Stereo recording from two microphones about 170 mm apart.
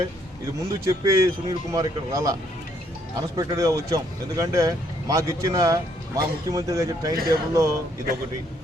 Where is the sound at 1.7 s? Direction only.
20° right (ahead or behind).